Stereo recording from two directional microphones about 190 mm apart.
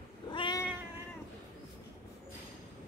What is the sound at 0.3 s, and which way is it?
Cat, 25° left (ahead or behind).